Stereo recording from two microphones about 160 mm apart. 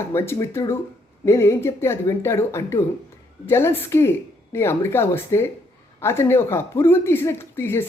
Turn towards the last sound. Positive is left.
turn(degrees=15)  # may be behind; listen again after turning